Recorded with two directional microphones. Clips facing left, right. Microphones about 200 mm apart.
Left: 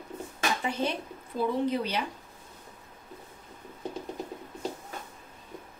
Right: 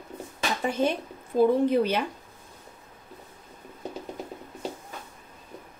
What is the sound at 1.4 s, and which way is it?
Speech, 55° right (ahead or behind).